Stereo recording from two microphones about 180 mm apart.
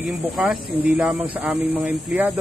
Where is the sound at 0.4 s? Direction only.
5° right (ahead or behind).